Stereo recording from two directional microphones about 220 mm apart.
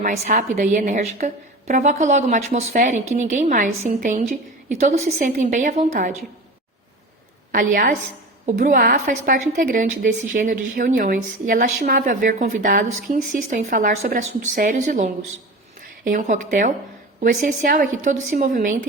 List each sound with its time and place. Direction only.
0.0 s a woman's voice: 35° right (ahead or behind)
7.5 s a woman's voice: 40° right (ahead or behind)